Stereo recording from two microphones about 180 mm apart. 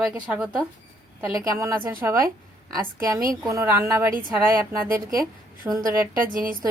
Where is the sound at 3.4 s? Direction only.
15° right (ahead or behind).